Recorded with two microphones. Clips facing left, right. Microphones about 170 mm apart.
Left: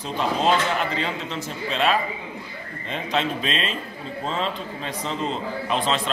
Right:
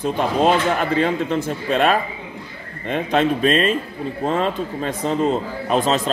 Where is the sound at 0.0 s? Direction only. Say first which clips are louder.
Right 5 dB; 55° right (ahead or behind).